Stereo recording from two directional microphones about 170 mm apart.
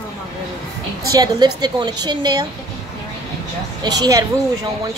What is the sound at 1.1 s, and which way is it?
A woman's voice, 25° right (ahead or behind).